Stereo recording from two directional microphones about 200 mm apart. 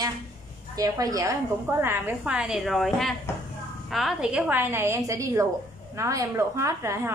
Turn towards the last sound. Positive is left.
turn(degrees=-15)  # may be behind; listen again after turning